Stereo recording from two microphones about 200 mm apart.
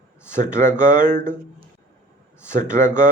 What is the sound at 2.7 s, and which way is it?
Speech, 15° left (ahead or behind).